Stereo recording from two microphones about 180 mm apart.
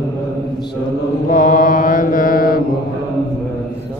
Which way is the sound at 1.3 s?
50° left (ahead or behind).